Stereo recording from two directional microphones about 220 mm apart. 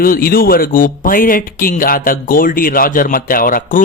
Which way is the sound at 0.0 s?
40° left (ahead or behind).